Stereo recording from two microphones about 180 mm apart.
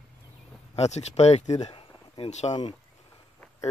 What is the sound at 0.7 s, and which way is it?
Speech, 35° left (ahead or behind).